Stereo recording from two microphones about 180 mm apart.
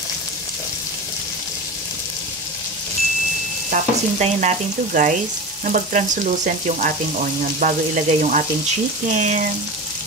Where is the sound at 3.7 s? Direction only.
40° right (ahead or behind).